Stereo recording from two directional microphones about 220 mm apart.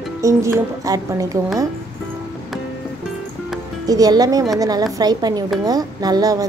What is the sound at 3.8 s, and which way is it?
A woman's voice, 15° right (ahead or behind).